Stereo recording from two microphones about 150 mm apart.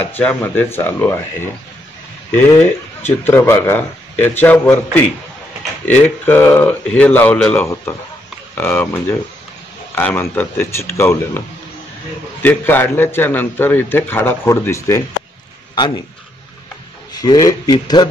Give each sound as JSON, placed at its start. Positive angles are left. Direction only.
{"t": 0.0, "sound": "a man's voice", "side_deg": 10}
{"t": 5.9, "sound": "a man's voice", "side_deg": 10}
{"t": 17.1, "sound": "speech", "side_deg": 25}